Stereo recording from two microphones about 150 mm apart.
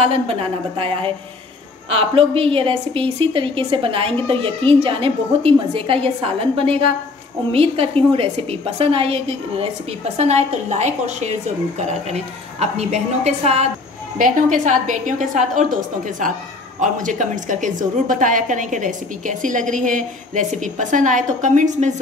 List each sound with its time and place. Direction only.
0.0 s a woman's voice: 40° right (ahead or behind)
14.1 s a woman's voice: 60° right (ahead or behind)
16.8 s a woman's voice: 60° right (ahead or behind)